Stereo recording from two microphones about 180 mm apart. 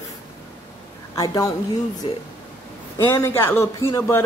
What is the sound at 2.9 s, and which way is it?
A man's voice, 15° left (ahead or behind).